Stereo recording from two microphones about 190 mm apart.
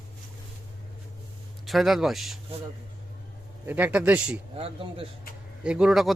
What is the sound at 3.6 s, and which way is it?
Speech, 10° right (ahead or behind).